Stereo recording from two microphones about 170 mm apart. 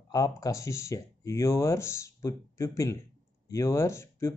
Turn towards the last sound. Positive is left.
turn(degrees=15)  # may be behind; listen again after turning